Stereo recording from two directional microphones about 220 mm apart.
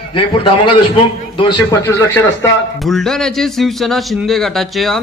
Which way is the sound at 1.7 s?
10° left (ahead or behind).